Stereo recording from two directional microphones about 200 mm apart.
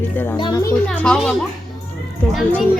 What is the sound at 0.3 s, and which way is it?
Speech, 20° left (ahead or behind).